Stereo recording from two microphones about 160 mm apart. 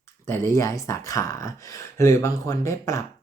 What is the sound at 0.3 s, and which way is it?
Speech, 20° left (ahead or behind).